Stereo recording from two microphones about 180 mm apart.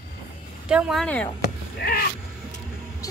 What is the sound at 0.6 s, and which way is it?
Speech, 5° right (ahead or behind).